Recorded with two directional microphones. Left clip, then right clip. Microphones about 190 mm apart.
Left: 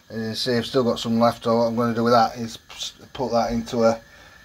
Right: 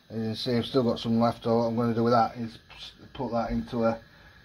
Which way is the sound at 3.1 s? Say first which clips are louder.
Left 8 dB; 20° left (ahead or behind).